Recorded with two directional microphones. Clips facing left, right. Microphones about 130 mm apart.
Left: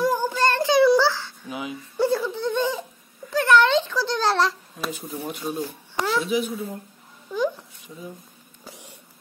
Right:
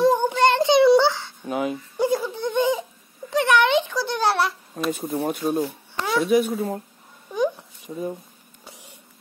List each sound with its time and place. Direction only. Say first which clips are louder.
0.0 s child singing: right 4 dB; 25° right (ahead or behind)
1.5 s speech: right 7 dB; 45° right (ahead or behind)
2.0 s a sound: left 1 dB; 15° right (ahead or behind)
4.8 s speech: right 11 dB; 50° right (ahead or behind)
6.1 s speech: right 7 dB; 60° right (ahead or behind)
7.9 s speech: right 10 dB; 45° right (ahead or behind)